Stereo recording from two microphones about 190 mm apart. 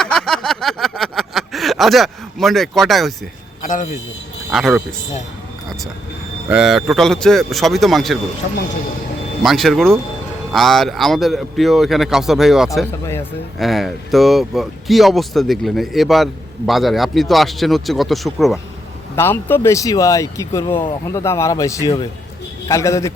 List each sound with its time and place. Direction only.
0.0 s a sound: 5° left (ahead or behind)
3.7 s a man's voice: 40° left (ahead or behind)
4.5 s speech: centre (ahead or behind)
6.5 s speech: centre (ahead or behind)
9.4 s speech: centre (ahead or behind)
19.1 s speech: 10° left (ahead or behind)